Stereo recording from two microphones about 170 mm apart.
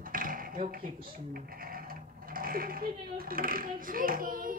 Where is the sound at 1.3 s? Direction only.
60° right (ahead or behind).